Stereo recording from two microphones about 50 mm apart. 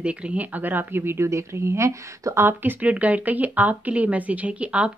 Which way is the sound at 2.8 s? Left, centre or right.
Right.